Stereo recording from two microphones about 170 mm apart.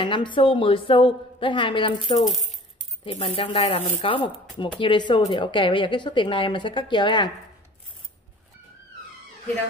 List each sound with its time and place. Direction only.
0.0 s speech: 30° left (ahead or behind)
2.2 s speech: centre (ahead or behind)
3.0 s speech: 30° left (ahead or behind)